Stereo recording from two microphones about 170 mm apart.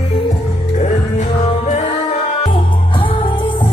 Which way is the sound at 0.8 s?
45° left (ahead or behind).